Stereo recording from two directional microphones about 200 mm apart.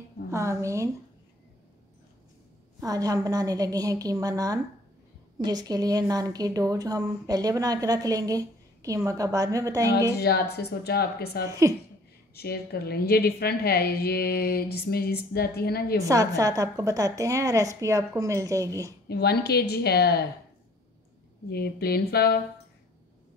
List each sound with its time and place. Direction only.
0.3 s a woman's voice: 15° right (ahead or behind)
2.8 s a woman's voice: 20° right (ahead or behind)
10.1 s a woman's voice: 55° left (ahead or behind)
16.0 s a woman's voice: 15° right (ahead or behind)
19.0 s a woman's voice: 55° left (ahead or behind)
21.5 s a woman's voice: 50° left (ahead or behind)